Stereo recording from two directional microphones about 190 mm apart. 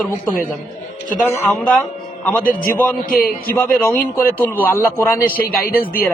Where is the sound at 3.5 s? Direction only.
10° left (ahead or behind).